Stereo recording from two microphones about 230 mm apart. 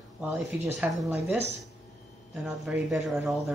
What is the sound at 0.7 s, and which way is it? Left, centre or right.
Speech, centre.